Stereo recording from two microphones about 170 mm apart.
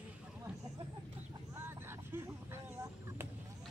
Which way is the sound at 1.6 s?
15° right (ahead or behind).